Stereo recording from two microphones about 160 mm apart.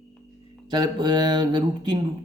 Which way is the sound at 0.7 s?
30° right (ahead or behind).